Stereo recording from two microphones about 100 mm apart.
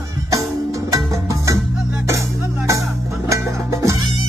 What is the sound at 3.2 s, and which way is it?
Music, 30° right (ahead or behind).